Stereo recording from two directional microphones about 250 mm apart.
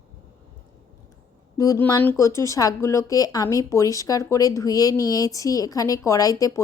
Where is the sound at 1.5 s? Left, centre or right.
Centre.